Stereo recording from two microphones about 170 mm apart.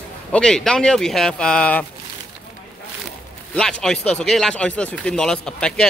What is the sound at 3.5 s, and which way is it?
Speech, 5° left (ahead or behind).